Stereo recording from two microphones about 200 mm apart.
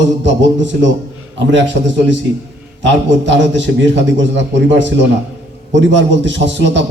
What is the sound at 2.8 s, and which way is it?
A man's voice, 65° right (ahead or behind).